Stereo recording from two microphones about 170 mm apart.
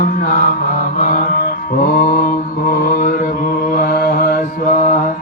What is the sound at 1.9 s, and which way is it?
Mantra, 50° left (ahead or behind).